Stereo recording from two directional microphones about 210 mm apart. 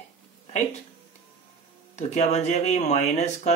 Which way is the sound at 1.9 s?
35° left (ahead or behind).